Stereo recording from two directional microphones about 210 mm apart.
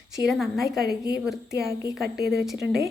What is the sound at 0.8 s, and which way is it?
Speech, 50° right (ahead or behind).